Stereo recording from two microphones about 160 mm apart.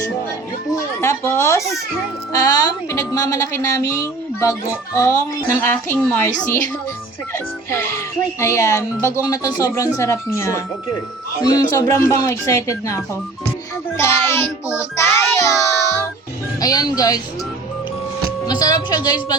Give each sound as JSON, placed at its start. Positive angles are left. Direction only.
{"t": 0.7, "sound": "music", "side_deg": 20}
{"t": 2.3, "sound": "a woman's voice", "side_deg": 25}
{"t": 18.4, "sound": "a woman's voice", "side_deg": 25}